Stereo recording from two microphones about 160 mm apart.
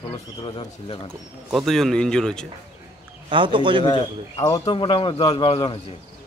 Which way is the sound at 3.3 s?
30° right (ahead or behind).